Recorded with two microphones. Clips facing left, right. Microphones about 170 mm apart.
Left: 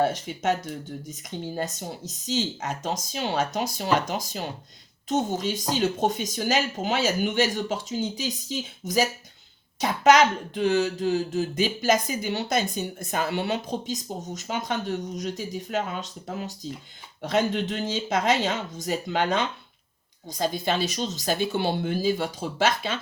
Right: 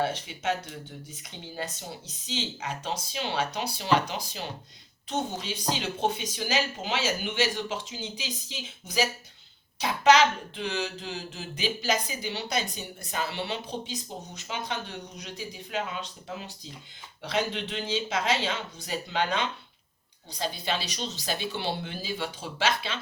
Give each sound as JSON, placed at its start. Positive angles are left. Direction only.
{"t": 0.0, "sound": "speech", "side_deg": 45}